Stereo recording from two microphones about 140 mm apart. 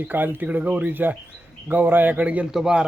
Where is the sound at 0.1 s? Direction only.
15° right (ahead or behind).